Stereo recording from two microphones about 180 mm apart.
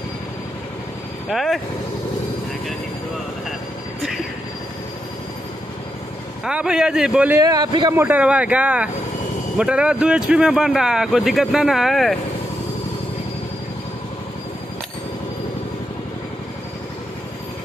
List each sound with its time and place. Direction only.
1.3 s speech: centre (ahead or behind)
6.4 s speech: 5° right (ahead or behind)
7.4 s a man's voice: 20° right (ahead or behind)
7.9 s speech: 10° right (ahead or behind)